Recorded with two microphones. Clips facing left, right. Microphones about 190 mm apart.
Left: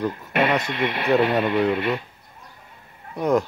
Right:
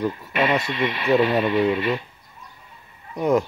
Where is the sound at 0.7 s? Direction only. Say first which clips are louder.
Even; 60° left (ahead or behind).